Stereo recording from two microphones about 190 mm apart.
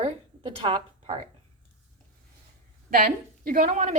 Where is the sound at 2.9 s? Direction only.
50° right (ahead or behind).